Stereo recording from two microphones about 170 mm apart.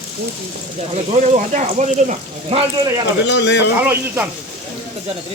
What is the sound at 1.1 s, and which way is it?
Speech, 45° right (ahead or behind).